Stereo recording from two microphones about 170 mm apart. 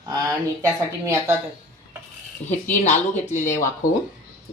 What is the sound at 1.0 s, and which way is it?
Speech, 20° right (ahead or behind).